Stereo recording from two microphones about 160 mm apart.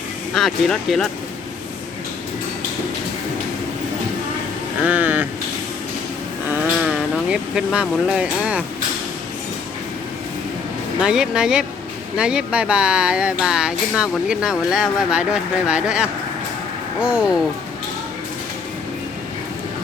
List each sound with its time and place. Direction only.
0.3 s speech: centre (ahead or behind)
4.8 s speech: 10° right (ahead or behind)
6.5 s speech: 5° right (ahead or behind)
11.0 s speech: 5° right (ahead or behind)